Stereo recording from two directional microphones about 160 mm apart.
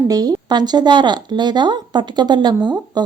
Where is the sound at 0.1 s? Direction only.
25° right (ahead or behind).